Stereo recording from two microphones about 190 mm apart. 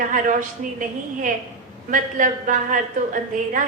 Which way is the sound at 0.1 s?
45° right (ahead or behind).